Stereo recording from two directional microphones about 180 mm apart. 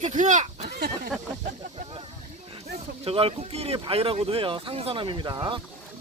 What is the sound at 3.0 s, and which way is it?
Speech, 35° right (ahead or behind).